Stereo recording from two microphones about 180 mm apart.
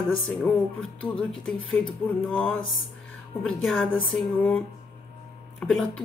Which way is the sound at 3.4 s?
5° left (ahead or behind).